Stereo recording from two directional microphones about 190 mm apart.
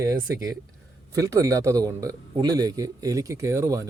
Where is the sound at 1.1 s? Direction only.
15° right (ahead or behind).